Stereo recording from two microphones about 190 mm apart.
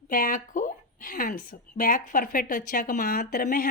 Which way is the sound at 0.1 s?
45° left (ahead or behind).